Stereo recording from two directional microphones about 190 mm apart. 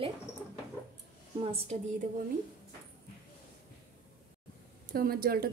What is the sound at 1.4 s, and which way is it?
Speech, 35° right (ahead or behind).